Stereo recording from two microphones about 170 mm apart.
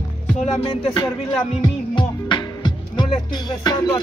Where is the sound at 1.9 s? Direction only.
25° left (ahead or behind).